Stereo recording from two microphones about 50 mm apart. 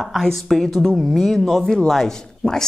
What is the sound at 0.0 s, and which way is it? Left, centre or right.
A woman's voice, centre.